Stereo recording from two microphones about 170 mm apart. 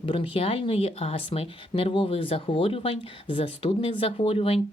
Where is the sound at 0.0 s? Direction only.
30° left (ahead or behind).